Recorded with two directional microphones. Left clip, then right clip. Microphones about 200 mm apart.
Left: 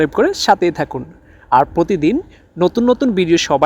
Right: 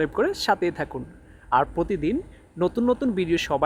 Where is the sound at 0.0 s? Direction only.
30° left (ahead or behind).